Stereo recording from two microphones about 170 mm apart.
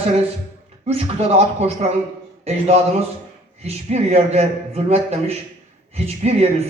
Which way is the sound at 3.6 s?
40° right (ahead or behind).